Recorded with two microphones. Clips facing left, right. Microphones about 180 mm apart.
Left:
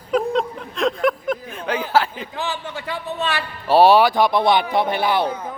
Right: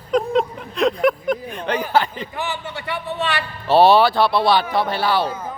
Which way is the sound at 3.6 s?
10° left (ahead or behind).